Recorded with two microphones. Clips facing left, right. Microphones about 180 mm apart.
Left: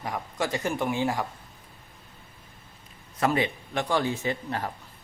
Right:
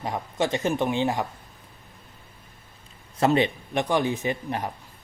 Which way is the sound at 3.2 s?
25° right (ahead or behind).